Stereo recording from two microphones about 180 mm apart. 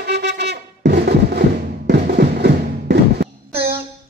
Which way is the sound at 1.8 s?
65° right (ahead or behind).